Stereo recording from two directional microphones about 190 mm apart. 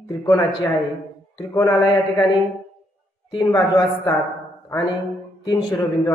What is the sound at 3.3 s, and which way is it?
Speech, 20° left (ahead or behind).